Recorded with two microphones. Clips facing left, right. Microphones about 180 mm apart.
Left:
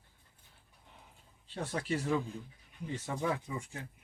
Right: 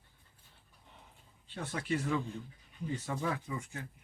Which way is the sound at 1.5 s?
35° left (ahead or behind).